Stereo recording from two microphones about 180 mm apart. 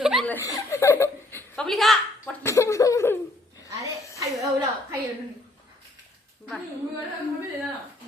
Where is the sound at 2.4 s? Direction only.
15° left (ahead or behind).